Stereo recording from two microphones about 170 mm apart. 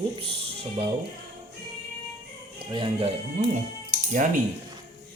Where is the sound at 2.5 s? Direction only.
30° right (ahead or behind).